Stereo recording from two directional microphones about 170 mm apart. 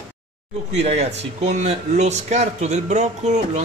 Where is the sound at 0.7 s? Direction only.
40° right (ahead or behind).